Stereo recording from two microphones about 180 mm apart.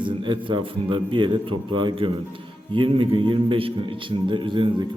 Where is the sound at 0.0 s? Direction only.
25° right (ahead or behind).